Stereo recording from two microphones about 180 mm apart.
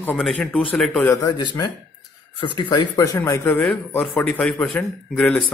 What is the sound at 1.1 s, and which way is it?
Speech, 20° left (ahead or behind).